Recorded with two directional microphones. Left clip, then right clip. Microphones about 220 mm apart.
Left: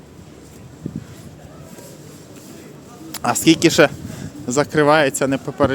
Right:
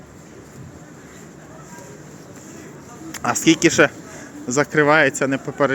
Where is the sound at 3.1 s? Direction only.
15° left (ahead or behind).